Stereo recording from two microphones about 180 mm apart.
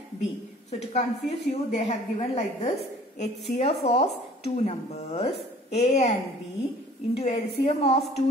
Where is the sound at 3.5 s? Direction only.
35° left (ahead or behind).